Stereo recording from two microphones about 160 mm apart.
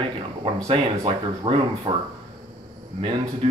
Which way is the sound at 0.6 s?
35° right (ahead or behind).